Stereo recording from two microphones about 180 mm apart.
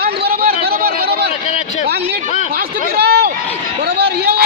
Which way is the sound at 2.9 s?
60° right (ahead or behind).